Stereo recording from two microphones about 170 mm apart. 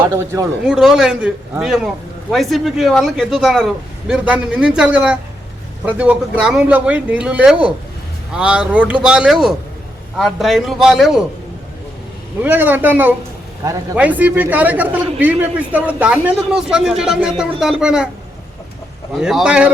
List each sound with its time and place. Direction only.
0.0 s a man's voice: 15° right (ahead or behind)
0.6 s a man's voice: 5° right (ahead or behind)
12.4 s a man's voice: 10° right (ahead or behind)
19.1 s speech: centre (ahead or behind)